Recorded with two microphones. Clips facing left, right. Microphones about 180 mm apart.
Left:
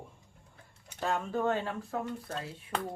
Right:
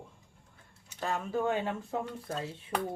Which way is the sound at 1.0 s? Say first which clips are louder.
Left 1 dB; centre (ahead or behind).